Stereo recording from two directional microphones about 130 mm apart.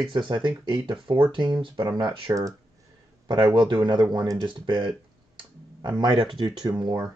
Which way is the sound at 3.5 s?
40° right (ahead or behind).